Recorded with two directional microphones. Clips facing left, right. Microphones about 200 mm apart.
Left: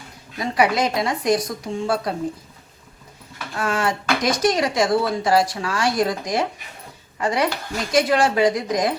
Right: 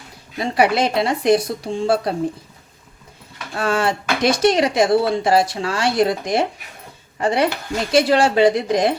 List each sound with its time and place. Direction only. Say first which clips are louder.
0.3 s speech: right 2 dB; 30° right (ahead or behind)
3.5 s speech: right 3 dB; 30° right (ahead or behind)